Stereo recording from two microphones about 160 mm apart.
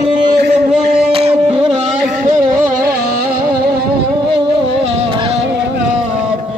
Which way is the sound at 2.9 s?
65° right (ahead or behind).